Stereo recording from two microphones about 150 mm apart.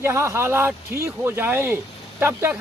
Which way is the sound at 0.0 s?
15° right (ahead or behind).